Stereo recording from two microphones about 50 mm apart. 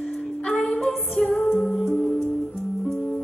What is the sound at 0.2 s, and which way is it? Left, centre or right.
Music, centre.